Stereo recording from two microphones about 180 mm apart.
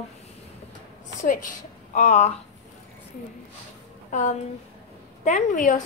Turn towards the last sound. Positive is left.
turn(degrees=45)  # may be behind; listen again after turning